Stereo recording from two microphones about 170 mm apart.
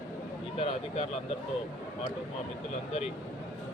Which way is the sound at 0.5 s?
35° left (ahead or behind).